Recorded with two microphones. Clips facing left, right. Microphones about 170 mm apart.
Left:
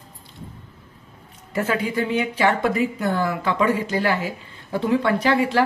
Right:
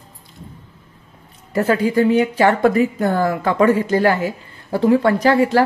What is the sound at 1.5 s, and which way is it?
Speech, 35° right (ahead or behind).